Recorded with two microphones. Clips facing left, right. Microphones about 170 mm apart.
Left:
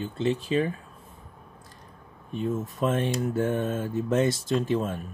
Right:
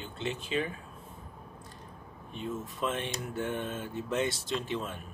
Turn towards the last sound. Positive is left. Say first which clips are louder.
# left 8 dB
turn(degrees=45)  # may be behind; listen again after turning